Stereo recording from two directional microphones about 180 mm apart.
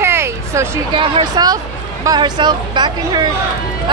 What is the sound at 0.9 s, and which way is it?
Speech, 30° right (ahead or behind).